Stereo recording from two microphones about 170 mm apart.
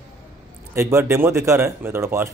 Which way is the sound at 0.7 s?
15° right (ahead or behind).